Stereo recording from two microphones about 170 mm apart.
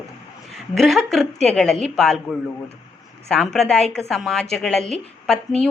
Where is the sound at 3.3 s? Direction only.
5° left (ahead or behind).